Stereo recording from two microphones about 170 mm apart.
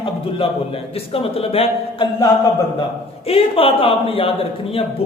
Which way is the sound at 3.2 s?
35° left (ahead or behind).